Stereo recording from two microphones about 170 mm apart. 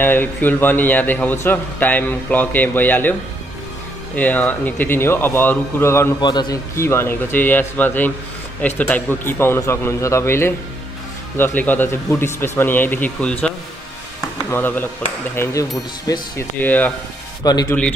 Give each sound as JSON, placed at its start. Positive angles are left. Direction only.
{"t": 0.0, "sound": "a man's voice", "side_deg": 10}
{"t": 14.5, "sound": "a man's voice", "side_deg": 10}
{"t": 17.4, "sound": "speech", "side_deg": 25}